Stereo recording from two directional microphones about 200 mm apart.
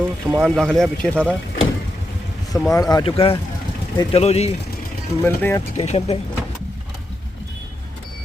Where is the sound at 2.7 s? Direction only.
20° left (ahead or behind).